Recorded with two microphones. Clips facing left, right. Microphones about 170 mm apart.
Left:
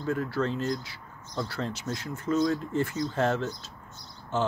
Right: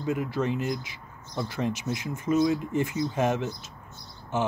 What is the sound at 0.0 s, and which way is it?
Speech, 15° right (ahead or behind).